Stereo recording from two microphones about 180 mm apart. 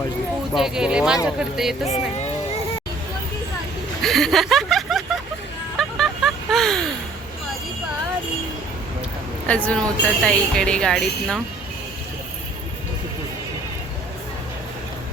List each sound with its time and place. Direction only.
0.5 s a woman's voice: centre (ahead or behind)
4.0 s speech: centre (ahead or behind)
6.0 s vehicle: centre (ahead or behind)
9.5 s a woman's voice: 5° left (ahead or behind)